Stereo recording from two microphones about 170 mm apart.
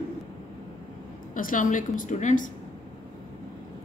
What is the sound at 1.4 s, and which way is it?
Speech, 50° left (ahead or behind).